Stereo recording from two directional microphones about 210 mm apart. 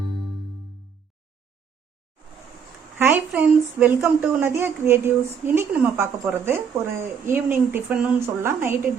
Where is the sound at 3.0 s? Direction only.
10° right (ahead or behind).